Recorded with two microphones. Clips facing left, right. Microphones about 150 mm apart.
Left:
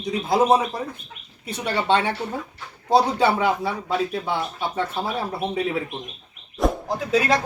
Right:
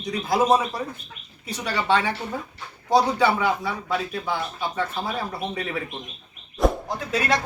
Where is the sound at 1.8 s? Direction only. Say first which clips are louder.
Left 1 dB; 25° left (ahead or behind).